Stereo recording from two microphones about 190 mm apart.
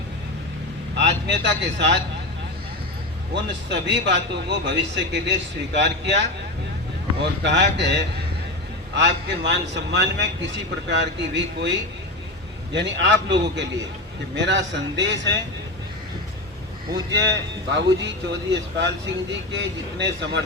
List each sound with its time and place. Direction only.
0.9 s speech: 65° right (ahead or behind)
3.7 s a man's voice: 65° right (ahead or behind)
16.9 s a man's voice: 65° right (ahead or behind)